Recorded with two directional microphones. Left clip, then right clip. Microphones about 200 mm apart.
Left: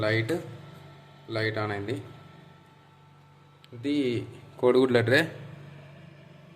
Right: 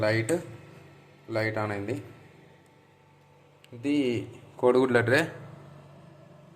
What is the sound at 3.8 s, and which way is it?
Speech, 5° left (ahead or behind).